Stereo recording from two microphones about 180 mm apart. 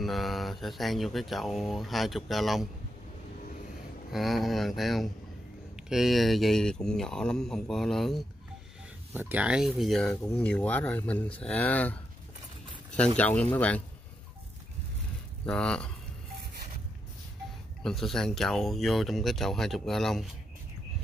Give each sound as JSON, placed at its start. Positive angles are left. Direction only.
{"t": 0.0, "sound": "speech", "side_deg": 0}
{"t": 4.1, "sound": "speech", "side_deg": 0}
{"t": 9.1, "sound": "speech", "side_deg": -10}
{"t": 15.4, "sound": "speech", "side_deg": 5}
{"t": 17.8, "sound": "speech", "side_deg": 0}